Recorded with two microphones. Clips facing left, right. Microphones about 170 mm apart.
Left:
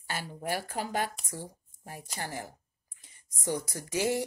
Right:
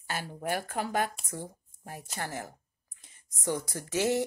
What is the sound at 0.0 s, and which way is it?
Speech, 50° right (ahead or behind).